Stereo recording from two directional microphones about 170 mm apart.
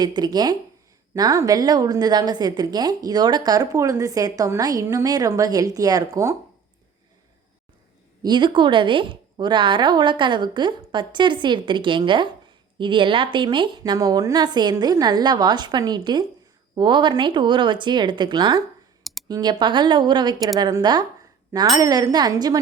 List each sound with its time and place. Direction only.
0.0 s a woman's voice: 25° right (ahead or behind)
8.2 s a woman's voice: 25° right (ahead or behind)